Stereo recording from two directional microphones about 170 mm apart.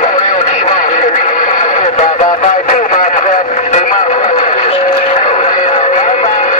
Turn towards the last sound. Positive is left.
turn(degrees=45)  # may be behind; listen again after turning